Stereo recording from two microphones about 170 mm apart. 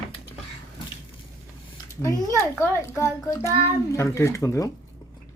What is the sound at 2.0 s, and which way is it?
A child's voice, 15° left (ahead or behind).